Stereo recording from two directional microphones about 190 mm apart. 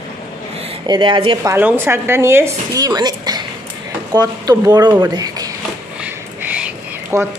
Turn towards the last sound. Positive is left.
turn(degrees=-10)  # may be behind; listen again after turning